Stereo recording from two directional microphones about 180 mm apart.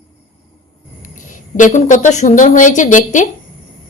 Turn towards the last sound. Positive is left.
turn(degrees=45)  # may be behind; listen again after turning